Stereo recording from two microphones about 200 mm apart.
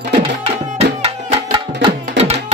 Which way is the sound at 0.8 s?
25° right (ahead or behind).